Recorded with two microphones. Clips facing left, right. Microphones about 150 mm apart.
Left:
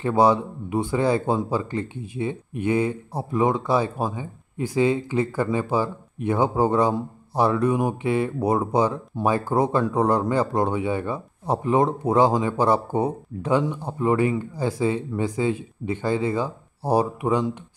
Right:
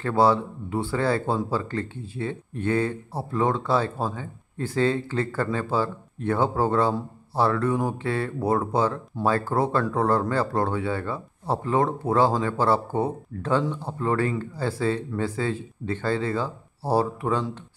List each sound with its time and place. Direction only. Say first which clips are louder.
0.0 s speech: left 2 dB; 15° left (ahead or behind)